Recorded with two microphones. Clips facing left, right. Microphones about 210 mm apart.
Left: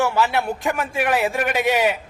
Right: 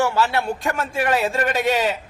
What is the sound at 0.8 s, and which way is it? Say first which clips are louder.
A man's voice: even; 15° left (ahead or behind).